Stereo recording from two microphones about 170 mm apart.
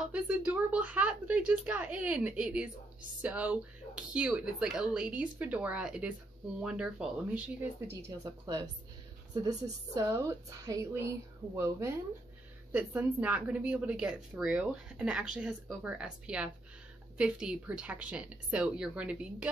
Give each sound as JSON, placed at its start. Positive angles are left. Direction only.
{"t": 0.1, "sound": "speech", "side_deg": -5}
{"t": 7.9, "sound": "a woman's voice", "side_deg": -20}